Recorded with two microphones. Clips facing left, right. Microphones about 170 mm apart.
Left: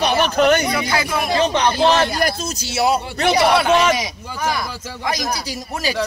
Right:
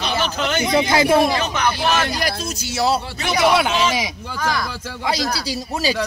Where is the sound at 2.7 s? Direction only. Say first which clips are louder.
Left 1 dB; 20° left (ahead or behind).